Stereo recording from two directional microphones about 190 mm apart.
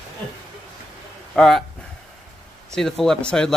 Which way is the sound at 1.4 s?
Centre (ahead or behind).